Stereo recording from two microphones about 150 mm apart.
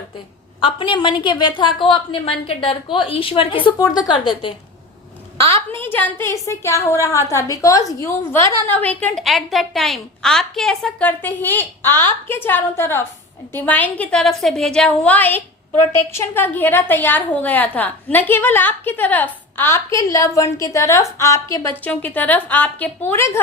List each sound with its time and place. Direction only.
0.6 s a woman's voice: 35° left (ahead or behind)
5.4 s a woman's voice: 20° left (ahead or behind)